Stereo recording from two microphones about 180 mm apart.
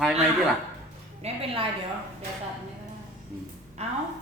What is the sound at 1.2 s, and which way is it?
Speech, 30° right (ahead or behind).